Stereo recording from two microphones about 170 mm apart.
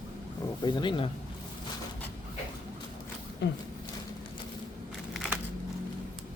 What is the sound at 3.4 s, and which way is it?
Speech, 90° left.